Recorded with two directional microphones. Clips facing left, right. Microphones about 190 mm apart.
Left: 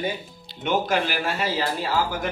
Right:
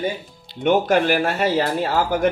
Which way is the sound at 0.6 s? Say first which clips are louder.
Right 6 dB; 55° right (ahead or behind).